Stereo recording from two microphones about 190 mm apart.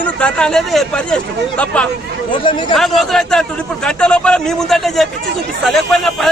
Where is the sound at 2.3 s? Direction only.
25° left (ahead or behind).